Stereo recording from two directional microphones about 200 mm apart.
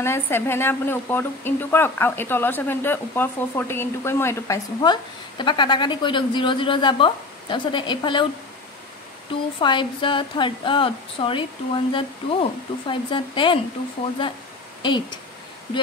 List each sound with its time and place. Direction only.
0.0 s a woman's voice: 10° left (ahead or behind)
9.6 s a woman's voice: 25° left (ahead or behind)
14.8 s a woman's voice: 25° left (ahead or behind)